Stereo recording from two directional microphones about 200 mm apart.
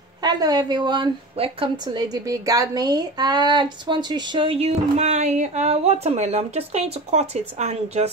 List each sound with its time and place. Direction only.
0.2 s a woman's voice: 20° right (ahead or behind)